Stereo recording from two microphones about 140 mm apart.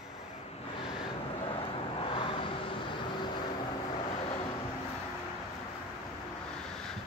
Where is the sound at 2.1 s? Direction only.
40° left (ahead or behind).